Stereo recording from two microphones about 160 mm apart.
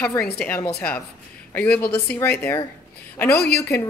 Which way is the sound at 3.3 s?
80° left.